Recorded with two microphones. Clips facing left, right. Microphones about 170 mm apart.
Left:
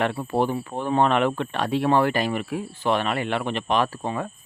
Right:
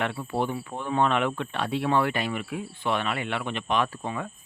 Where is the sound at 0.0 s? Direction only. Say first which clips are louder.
Left 5 dB; 45° left (ahead or behind).